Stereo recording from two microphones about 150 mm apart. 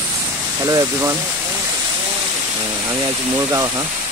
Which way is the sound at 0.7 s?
25° right (ahead or behind).